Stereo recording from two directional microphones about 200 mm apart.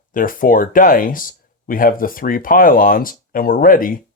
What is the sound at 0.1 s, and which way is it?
Speech, 45° left (ahead or behind).